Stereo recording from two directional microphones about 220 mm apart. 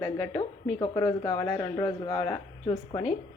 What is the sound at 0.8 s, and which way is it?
Speech, 15° left (ahead or behind).